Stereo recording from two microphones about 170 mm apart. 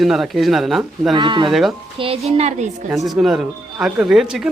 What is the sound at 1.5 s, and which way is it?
Speech, centre (ahead or behind).